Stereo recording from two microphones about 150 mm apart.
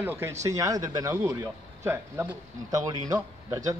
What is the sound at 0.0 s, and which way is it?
A man's voice, 15° right (ahead or behind).